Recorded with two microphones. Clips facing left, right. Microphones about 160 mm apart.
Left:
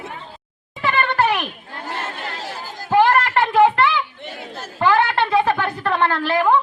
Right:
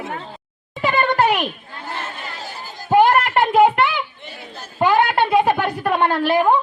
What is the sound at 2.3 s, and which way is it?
Chatter, 85° left.